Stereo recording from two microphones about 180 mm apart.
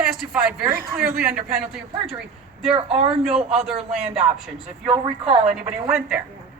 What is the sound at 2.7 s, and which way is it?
Speech, 35° right (ahead or behind).